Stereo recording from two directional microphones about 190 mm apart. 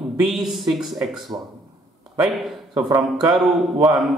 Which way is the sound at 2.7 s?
20° right (ahead or behind).